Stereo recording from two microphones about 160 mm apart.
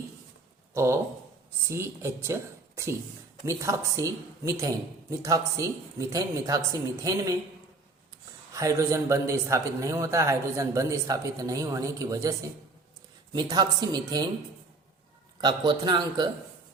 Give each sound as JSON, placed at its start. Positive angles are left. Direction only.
{"t": 0.7, "sound": "a man's voice", "side_deg": -15}
{"t": 8.5, "sound": "a man's voice", "side_deg": -20}
{"t": 13.3, "sound": "a man's voice", "side_deg": -25}
{"t": 15.4, "sound": "a man's voice", "side_deg": -25}